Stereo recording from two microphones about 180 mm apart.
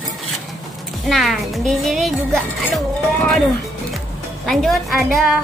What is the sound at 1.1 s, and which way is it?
A woman's voice, centre (ahead or behind).